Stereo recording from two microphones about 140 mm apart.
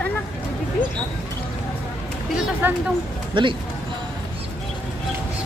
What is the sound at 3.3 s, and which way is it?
Speech, 35° right (ahead or behind).